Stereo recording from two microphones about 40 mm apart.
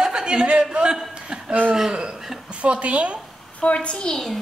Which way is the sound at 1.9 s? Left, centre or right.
Right.